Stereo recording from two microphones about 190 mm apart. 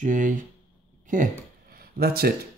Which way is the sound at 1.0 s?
45° right (ahead or behind).